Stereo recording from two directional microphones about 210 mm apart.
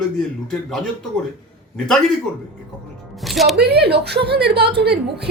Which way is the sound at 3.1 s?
Centre (ahead or behind).